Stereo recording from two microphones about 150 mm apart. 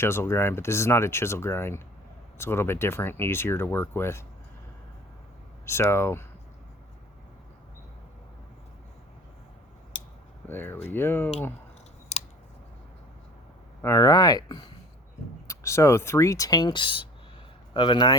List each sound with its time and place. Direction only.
0.0 s speech: 15° left (ahead or behind)
5.6 s speech: 15° left (ahead or behind)
10.5 s speech: 15° left (ahead or behind)
13.8 s speech: 20° left (ahead or behind)
15.4 s speech: 20° left (ahead or behind)